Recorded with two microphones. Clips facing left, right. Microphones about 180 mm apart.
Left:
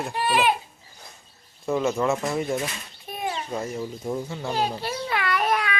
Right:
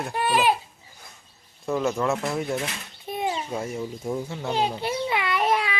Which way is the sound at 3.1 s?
20° right (ahead or behind).